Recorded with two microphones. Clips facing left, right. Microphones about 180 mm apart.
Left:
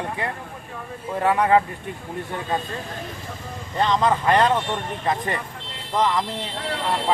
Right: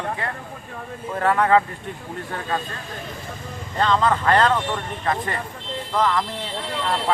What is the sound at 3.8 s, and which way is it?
Speech, 15° left (ahead or behind).